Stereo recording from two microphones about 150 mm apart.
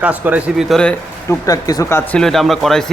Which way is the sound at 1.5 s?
25° left (ahead or behind).